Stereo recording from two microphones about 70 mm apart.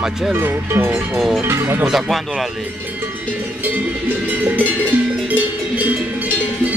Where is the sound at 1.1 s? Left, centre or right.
Centre.